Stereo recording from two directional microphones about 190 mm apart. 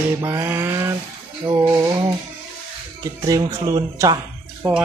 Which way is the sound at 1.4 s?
20° right (ahead or behind).